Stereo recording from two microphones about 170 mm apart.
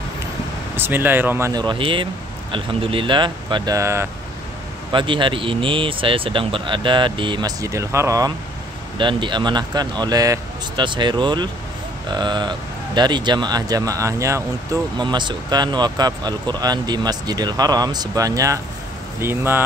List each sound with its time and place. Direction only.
0.7 s speech: 10° right (ahead or behind)
1.5 s speech: 25° right (ahead or behind)
4.9 s speech: 30° right (ahead or behind)
8.9 s speech: 30° right (ahead or behind); by 19.6 s 15° right (ahead or behind)